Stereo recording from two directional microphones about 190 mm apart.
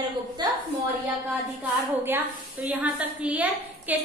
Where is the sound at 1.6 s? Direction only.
10° right (ahead or behind).